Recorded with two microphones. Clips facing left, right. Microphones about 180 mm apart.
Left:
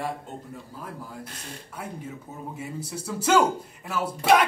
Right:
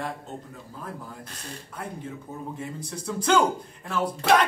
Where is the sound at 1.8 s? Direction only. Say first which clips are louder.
Right 1 dB; 5° left (ahead or behind).